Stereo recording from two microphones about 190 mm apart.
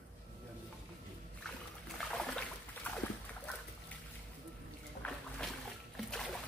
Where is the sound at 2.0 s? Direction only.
5° left (ahead or behind).